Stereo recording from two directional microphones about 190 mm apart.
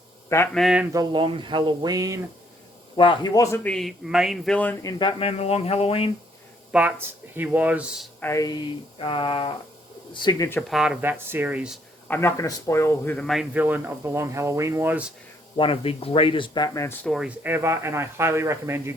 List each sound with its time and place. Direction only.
0.5 s speech: centre (ahead or behind)
0.9 s speech: 25° right (ahead or behind)
3.0 s a man's voice: 25° left (ahead or behind)
6.7 s speech: 5° right (ahead or behind)
8.2 s a man's voice: 15° left (ahead or behind)
10.7 s speech: 5° right (ahead or behind)
12.0 s speech: 10° left (ahead or behind)
13.1 s speech: centre (ahead or behind)
15.5 s a man's voice: 30° left (ahead or behind)
17.1 s speech: 5° right (ahead or behind)